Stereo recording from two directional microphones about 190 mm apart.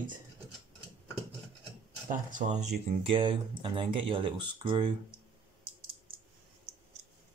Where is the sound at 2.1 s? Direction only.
45° right (ahead or behind).